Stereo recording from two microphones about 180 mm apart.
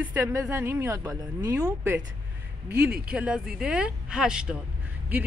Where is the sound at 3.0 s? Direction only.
5° right (ahead or behind).